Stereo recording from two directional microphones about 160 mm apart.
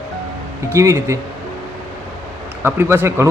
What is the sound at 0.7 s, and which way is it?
Speech, 15° right (ahead or behind).